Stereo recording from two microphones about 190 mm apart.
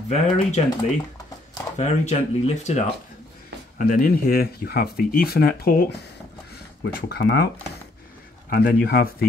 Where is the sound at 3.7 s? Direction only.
45° left (ahead or behind).